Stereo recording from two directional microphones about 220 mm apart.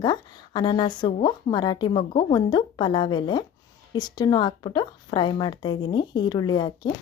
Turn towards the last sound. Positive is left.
turn(degrees=20)  # may be behind; listen again after turning